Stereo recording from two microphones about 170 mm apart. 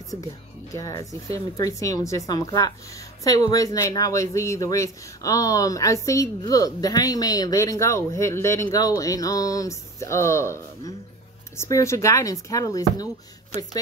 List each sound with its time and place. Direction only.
0.7 s speech: 20° left (ahead or behind)